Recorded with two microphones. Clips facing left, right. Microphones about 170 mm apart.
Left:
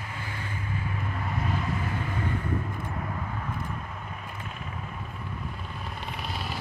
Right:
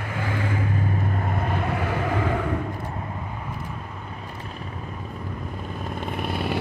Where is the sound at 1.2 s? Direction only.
55° right (ahead or behind); by 2.5 s 90° right.